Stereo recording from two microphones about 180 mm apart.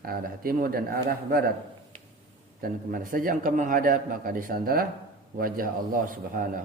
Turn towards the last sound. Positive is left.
turn(degrees=-50)  # may be behind; listen again after turning